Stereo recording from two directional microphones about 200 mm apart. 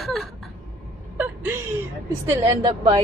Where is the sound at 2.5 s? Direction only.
25° right (ahead or behind).